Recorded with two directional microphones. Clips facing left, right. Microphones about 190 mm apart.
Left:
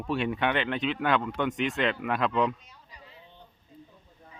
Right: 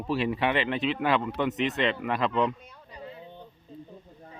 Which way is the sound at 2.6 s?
55° right (ahead or behind).